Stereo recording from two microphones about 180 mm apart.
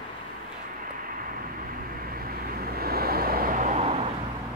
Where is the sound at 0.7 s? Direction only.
50° right (ahead or behind); by 4.1 s 35° right (ahead or behind).